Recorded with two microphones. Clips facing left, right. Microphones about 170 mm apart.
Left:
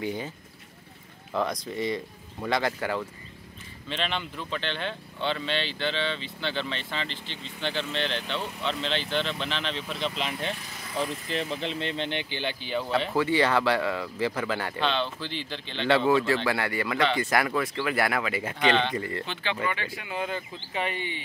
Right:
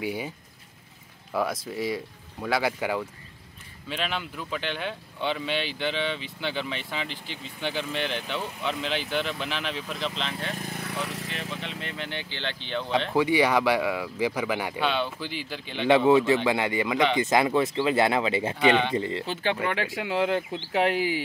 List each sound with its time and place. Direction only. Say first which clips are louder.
0.0 s speech: right 1 dB; 10° right (ahead or behind)
1.3 s speech: right 1 dB; 5° right (ahead or behind)
10.6 s speech: left 1 dB; 60° right (ahead or behind); by 11.3 s 90° right
11.3 s speech: left 5 dB; 30° left (ahead or behind); by 13.1 s 5° left (ahead or behind)
13.1 s speech: right 2 dB; 15° right (ahead or behind)
18.6 s speech: right 2 dB; 10° right (ahead or behind)
19.2 s speech: right 5 dB; 40° right (ahead or behind)
19.6 s speech: right 3 dB; 85° right